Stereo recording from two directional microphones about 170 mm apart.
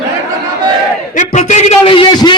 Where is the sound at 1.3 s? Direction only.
45° left (ahead or behind); by 2.3 s 30° left (ahead or behind).